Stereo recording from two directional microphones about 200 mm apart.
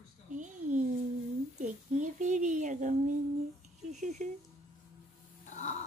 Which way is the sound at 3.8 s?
35° right (ahead or behind).